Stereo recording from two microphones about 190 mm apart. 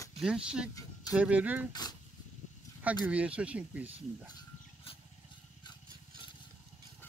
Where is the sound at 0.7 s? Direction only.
20° left (ahead or behind).